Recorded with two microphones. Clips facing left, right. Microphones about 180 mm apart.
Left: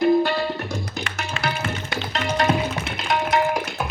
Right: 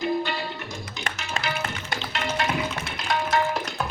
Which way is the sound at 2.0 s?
40° left (ahead or behind).